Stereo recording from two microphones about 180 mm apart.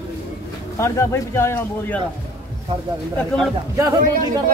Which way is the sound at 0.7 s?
15° left (ahead or behind).